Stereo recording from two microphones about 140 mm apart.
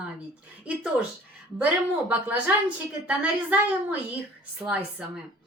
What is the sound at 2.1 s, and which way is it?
A woman's voice, 15° right (ahead or behind).